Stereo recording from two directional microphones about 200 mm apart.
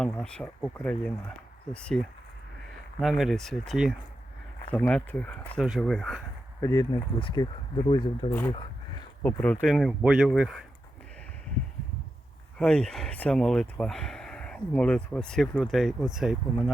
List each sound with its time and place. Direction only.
0.0 s speech: 5° left (ahead or behind)
3.0 s speech: centre (ahead or behind)
6.6 s speech: 15° left (ahead or behind)
8.4 s a sound: 25° left (ahead or behind)
9.2 s speech: 5° left (ahead or behind)
12.5 s speech: 5° left (ahead or behind)